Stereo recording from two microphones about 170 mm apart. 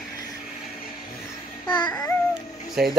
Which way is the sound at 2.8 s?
5° right (ahead or behind).